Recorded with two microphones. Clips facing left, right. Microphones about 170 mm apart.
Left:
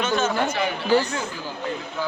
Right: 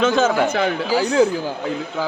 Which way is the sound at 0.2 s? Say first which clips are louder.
Right 6 dB; 90° right.